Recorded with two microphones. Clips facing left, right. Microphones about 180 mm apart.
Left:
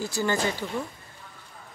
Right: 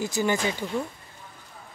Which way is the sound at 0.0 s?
15° right (ahead or behind).